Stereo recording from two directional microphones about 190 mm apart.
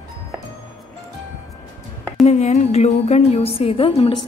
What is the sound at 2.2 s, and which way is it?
A woman's voice, 35° left (ahead or behind).